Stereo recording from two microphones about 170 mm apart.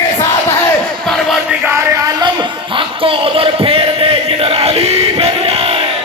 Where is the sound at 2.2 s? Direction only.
30° right (ahead or behind).